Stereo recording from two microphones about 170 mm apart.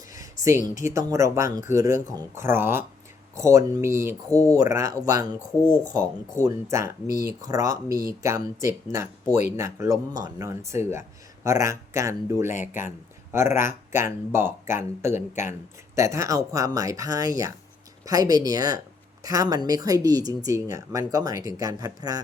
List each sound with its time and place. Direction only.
0.6 s speech: 50° left (ahead or behind)
1.1 s speech: 15° right (ahead or behind)
6.4 s speech: 15° right (ahead or behind)
12.5 s speech: 45° left (ahead or behind)
13.3 s speech: 15° right (ahead or behind)